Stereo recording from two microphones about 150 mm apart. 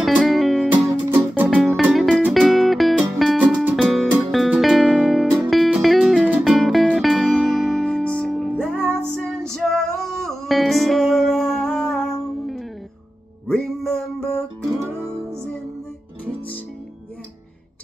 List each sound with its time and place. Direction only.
0.0 s music: centre (ahead or behind)
1.1 s music: 10° right (ahead or behind)
1.6 s music: centre (ahead or behind)
14.8 s music: 15° right (ahead or behind)